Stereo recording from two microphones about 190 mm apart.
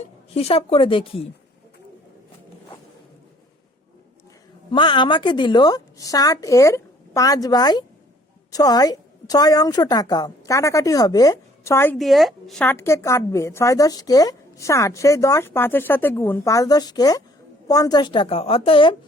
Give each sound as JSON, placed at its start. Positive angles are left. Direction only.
{"t": 0.3, "sound": "a woman's voice", "side_deg": 30}
{"t": 4.7, "sound": "a woman's voice", "side_deg": 25}
{"t": 11.9, "sound": "a woman's voice", "side_deg": 0}